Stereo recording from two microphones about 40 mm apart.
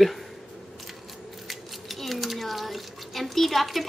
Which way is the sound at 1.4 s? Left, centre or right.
Centre.